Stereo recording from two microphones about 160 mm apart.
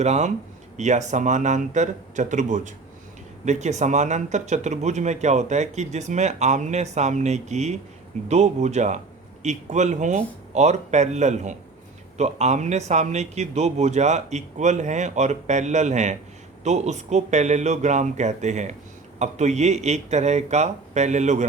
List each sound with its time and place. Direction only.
0.0 s speech: 45° right (ahead or behind)